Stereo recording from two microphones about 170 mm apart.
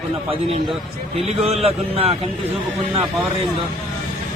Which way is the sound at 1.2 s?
35° right (ahead or behind).